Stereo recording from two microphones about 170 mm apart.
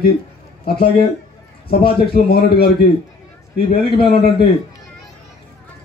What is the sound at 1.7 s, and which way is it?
A man's voice, 65° left (ahead or behind).